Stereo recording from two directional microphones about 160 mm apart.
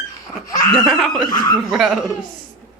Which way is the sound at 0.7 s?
Centre (ahead or behind).